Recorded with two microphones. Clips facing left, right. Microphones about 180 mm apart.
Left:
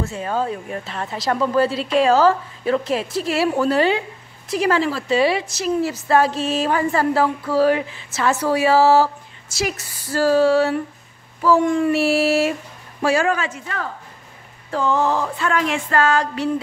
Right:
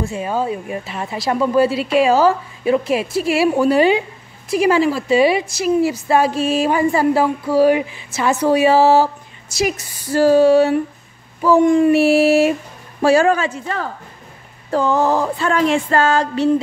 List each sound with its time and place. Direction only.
0.0 s a woman's voice: 15° right (ahead or behind)
13.0 s music: 30° right (ahead or behind)